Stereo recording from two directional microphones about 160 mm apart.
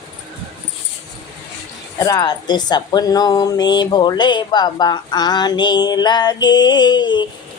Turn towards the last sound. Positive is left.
turn(degrees=30)  # may be behind; listen again after turning